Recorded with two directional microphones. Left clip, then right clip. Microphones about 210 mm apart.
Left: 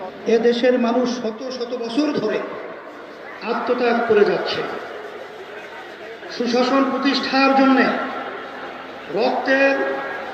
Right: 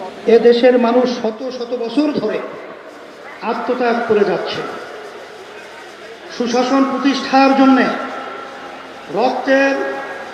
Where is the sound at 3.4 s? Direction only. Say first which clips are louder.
Right 2 dB; 15° right (ahead or behind).